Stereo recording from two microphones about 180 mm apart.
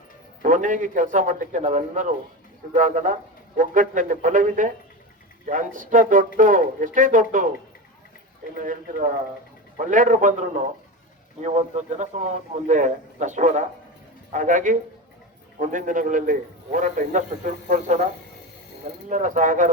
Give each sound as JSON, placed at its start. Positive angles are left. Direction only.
{"t": 0.4, "sound": "a man's voice", "side_deg": -45}
{"t": 8.5, "sound": "a man's voice", "side_deg": -45}
{"t": 11.4, "sound": "a man's voice", "side_deg": -40}
{"t": 19.0, "sound": "a man's voice", "side_deg": -45}